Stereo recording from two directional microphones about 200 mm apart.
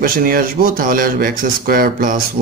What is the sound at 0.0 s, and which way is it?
Speech, 45° right (ahead or behind).